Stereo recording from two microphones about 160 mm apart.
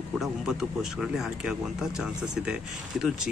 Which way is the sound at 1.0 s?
5° right (ahead or behind).